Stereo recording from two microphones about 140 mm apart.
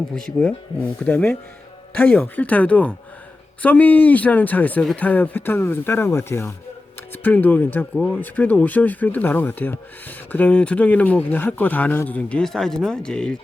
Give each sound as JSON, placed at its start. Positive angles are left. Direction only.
{"t": 0.1, "sound": "speech", "side_deg": 5}